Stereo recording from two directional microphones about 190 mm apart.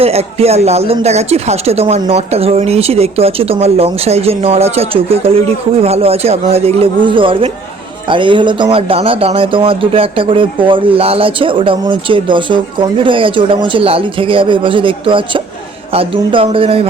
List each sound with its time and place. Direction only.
0.0 s speech: 30° right (ahead or behind)